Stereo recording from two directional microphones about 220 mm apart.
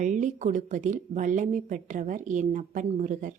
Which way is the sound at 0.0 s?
35° right (ahead or behind).